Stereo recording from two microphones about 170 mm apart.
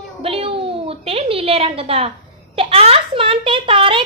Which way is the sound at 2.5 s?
35° right (ahead or behind).